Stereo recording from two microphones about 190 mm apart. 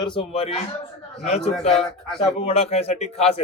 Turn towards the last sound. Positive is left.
turn(degrees=35)  # may be behind; listen again after turning